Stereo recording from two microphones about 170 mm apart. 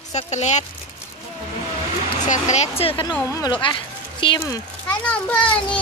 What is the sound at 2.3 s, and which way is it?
Speech, 40° left (ahead or behind).